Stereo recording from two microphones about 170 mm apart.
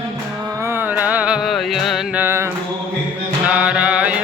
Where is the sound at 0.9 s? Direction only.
10° right (ahead or behind).